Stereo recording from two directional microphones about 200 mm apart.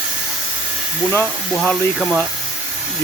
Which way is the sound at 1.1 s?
10° left (ahead or behind).